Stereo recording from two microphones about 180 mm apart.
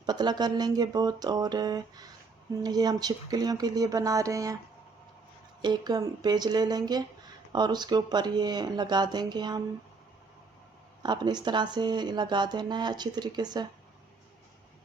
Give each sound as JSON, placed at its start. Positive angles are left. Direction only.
{"t": 0.0, "sound": "speech", "side_deg": -25}
{"t": 5.6, "sound": "speech", "side_deg": -25}
{"t": 11.0, "sound": "speech", "side_deg": -25}